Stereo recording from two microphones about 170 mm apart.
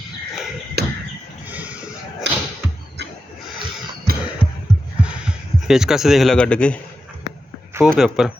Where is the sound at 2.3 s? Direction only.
90° right.